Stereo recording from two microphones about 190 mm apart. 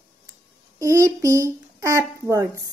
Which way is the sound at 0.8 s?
15° right (ahead or behind).